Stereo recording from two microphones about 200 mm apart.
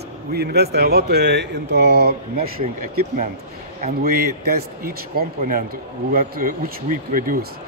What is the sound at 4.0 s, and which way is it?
A man's voice, 50° right (ahead or behind).